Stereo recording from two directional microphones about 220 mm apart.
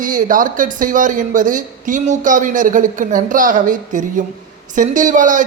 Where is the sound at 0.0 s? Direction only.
35° right (ahead or behind).